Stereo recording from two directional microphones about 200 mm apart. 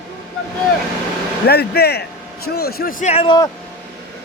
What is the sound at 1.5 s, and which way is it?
A man's voice, 50° left (ahead or behind).